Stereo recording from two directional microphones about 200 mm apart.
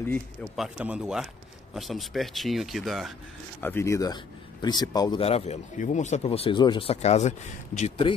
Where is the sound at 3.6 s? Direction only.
10° left (ahead or behind); by 8.1 s 30° left (ahead or behind).